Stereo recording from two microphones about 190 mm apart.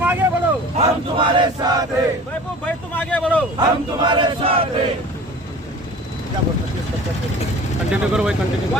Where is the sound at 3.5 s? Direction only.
20° right (ahead or behind).